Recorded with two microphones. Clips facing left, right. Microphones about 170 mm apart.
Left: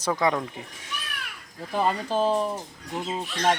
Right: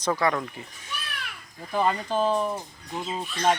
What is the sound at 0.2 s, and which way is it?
Speech, 15° left (ahead or behind).